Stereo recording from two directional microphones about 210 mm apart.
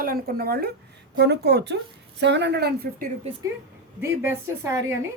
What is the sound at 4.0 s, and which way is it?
A woman's voice, 10° right (ahead or behind).